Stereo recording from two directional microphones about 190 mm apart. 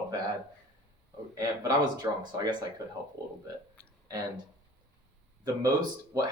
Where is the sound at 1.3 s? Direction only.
20° right (ahead or behind).